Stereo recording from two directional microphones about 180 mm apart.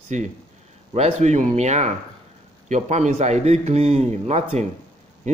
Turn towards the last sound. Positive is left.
turn(degrees=-40)  # may be behind; listen again after turning